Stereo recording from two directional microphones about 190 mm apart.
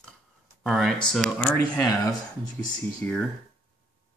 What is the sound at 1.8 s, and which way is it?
Speech, 15° left (ahead or behind).